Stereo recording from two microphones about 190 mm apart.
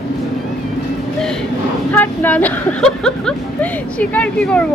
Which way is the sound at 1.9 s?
10° left (ahead or behind).